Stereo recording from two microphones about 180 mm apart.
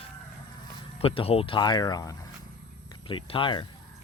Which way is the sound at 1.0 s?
30° left (ahead or behind).